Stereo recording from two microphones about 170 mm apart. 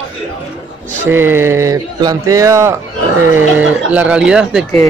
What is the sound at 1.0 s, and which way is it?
Speech, 15° right (ahead or behind).